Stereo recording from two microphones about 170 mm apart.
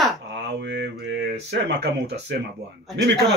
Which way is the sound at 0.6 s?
90° right.